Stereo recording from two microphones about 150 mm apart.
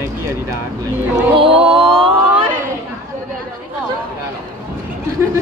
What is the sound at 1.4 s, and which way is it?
Mantra, 40° right (ahead or behind).